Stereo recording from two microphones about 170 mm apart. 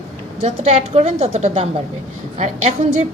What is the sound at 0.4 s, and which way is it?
A woman's voice, 35° right (ahead or behind).